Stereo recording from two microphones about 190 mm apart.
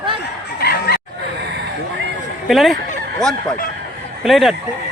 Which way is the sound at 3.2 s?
5° left (ahead or behind).